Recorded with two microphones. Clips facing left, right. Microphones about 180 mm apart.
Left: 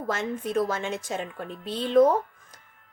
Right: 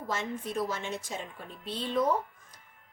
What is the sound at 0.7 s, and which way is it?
Speech, 90° left.